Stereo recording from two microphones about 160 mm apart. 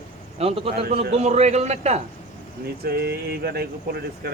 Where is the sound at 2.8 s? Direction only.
80° right.